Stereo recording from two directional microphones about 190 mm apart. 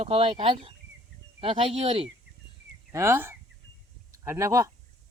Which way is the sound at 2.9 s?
15° right (ahead or behind).